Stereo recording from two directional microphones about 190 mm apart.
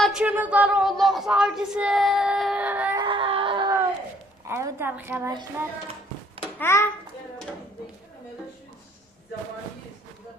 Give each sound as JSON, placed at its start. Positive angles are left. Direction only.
{"t": 0.0, "sound": "speech", "side_deg": -5}
{"t": 3.0, "sound": "screaming", "side_deg": -25}
{"t": 4.4, "sound": "a woman's voice", "side_deg": -15}
{"t": 6.6, "sound": "a child's voice", "side_deg": 15}